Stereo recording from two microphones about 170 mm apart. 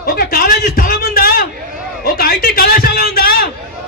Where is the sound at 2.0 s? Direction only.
60° left (ahead or behind).